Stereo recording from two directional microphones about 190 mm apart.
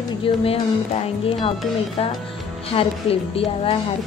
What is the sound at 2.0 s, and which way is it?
A woman's voice, 30° left (ahead or behind).